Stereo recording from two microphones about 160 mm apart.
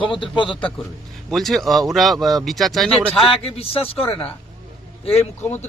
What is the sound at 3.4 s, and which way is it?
Speech, 35° left (ahead or behind).